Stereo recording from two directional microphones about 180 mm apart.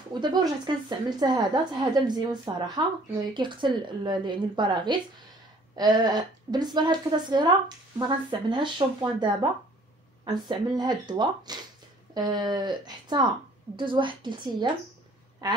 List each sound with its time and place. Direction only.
0.1 s a woman's voice: 25° right (ahead or behind)